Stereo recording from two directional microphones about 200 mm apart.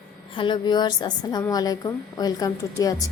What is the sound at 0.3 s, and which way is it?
A woman's voice, 25° left (ahead or behind).